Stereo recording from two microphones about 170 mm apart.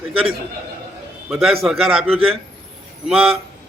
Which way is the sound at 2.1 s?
35° right (ahead or behind).